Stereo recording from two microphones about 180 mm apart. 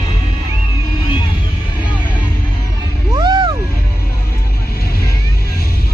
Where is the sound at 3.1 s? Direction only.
25° right (ahead or behind).